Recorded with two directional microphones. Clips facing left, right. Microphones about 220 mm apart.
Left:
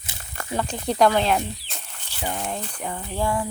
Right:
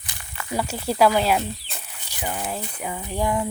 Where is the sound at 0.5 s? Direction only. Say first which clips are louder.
Even; 5° right (ahead or behind).